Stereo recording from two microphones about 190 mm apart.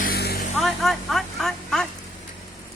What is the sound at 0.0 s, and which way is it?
Vehicle, 55° left (ahead or behind).